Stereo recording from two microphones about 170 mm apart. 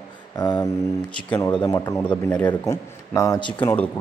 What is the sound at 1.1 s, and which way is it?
Speech, 10° left (ahead or behind).